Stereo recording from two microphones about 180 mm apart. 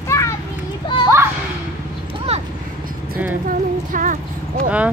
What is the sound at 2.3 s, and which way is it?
Vehicle, 35° right (ahead or behind).